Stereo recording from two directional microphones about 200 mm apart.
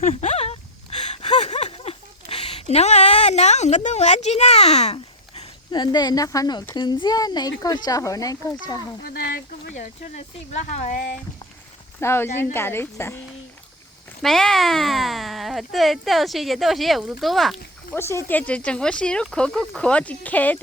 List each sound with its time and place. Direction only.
0.0 s a sound: 35° left (ahead or behind); by 6.7 s 20° left (ahead or behind)
6.7 s speech: 20° left (ahead or behind)
9.0 s a woman's voice: 50° left (ahead or behind)
11.9 s speech: 10° left (ahead or behind)
14.2 s speech: centre (ahead or behind)
17.9 s speech: 15° left (ahead or behind)